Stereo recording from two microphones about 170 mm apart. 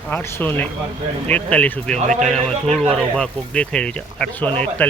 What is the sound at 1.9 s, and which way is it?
Speech, 45° right (ahead or behind).